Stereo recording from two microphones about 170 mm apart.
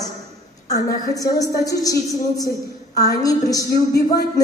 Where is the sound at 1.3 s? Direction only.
20° left (ahead or behind).